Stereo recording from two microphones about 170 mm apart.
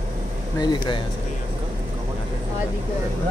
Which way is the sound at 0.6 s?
25° left (ahead or behind).